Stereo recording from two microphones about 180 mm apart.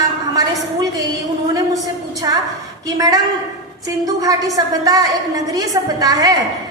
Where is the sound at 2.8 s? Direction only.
20° right (ahead or behind).